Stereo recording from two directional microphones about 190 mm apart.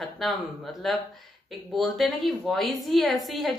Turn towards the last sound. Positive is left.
turn(degrees=0)  # may be behind; listen again after turning